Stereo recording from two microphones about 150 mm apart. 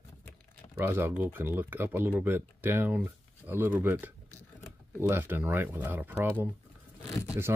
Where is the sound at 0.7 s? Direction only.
15° right (ahead or behind).